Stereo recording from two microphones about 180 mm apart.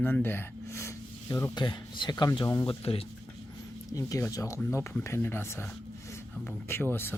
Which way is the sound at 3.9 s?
20° left (ahead or behind).